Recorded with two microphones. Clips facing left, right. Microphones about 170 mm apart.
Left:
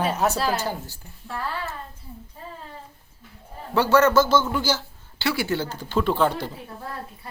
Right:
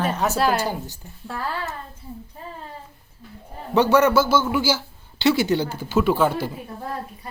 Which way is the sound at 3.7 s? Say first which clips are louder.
Right 1 dB; 15° right (ahead or behind).